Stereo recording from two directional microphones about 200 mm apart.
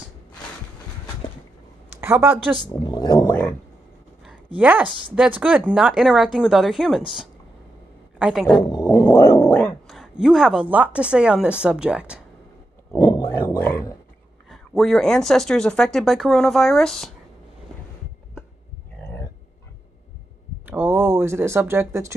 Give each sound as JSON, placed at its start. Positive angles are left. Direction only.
{"t": 2.0, "sound": "a woman's voice", "side_deg": -10}
{"t": 2.7, "sound": "speech", "side_deg": 20}
{"t": 4.6, "sound": "speech", "side_deg": -5}
{"t": 8.2, "sound": "speech", "side_deg": 0}
{"t": 8.6, "sound": "speech", "side_deg": 20}
{"t": 12.9, "sound": "a sound", "side_deg": 20}
{"t": 13.6, "sound": "speech", "side_deg": 10}
{"t": 14.5, "sound": "speech", "side_deg": 0}
{"t": 20.6, "sound": "speech", "side_deg": -10}